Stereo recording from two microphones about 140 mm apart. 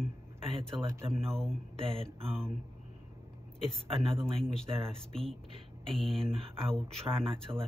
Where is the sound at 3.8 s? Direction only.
40° right (ahead or behind).